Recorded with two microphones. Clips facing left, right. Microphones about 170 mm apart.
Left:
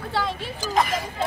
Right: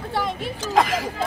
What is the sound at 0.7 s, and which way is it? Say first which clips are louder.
Speech: right 3 dB; 90° right.